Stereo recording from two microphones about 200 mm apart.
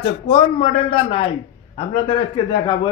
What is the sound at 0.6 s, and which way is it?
A man's voice, 25° left (ahead or behind).